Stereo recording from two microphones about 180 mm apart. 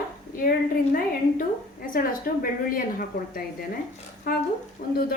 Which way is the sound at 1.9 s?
50° left (ahead or behind).